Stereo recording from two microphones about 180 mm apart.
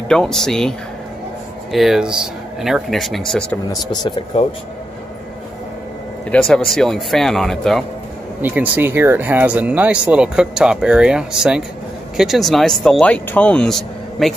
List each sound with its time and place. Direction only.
0.1 s speech: 5° left (ahead or behind)
4.3 s speech: 35° left (ahead or behind)
6.3 s speech: centre (ahead or behind)
8.4 s speech: 10° right (ahead or behind)